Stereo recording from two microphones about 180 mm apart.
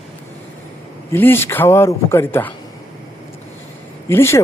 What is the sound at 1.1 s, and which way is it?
Speech, 10° left (ahead or behind).